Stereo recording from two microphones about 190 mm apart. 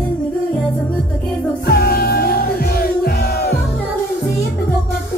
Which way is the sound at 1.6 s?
55° left (ahead or behind).